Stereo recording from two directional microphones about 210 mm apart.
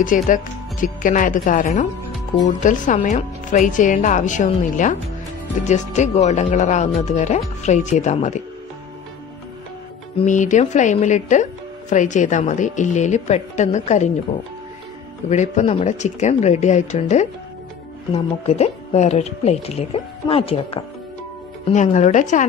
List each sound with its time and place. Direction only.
0.0 s speech: 40° left (ahead or behind)
10.1 s speech: 35° left (ahead or behind)
15.2 s speech: 35° left (ahead or behind)